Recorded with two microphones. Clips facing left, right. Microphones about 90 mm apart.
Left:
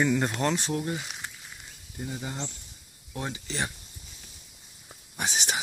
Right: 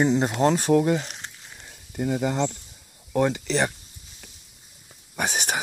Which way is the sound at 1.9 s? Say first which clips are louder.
Right 11 dB; 70° right (ahead or behind).